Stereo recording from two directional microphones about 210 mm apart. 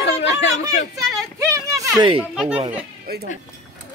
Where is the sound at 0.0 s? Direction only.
55° left (ahead or behind).